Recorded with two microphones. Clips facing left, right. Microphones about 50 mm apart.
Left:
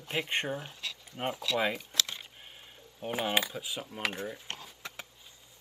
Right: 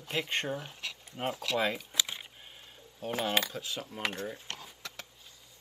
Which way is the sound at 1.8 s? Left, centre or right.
Centre.